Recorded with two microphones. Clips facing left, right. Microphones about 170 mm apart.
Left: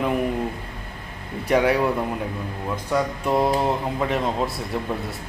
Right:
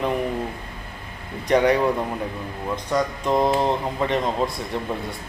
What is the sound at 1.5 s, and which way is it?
Speech, 5° left (ahead or behind).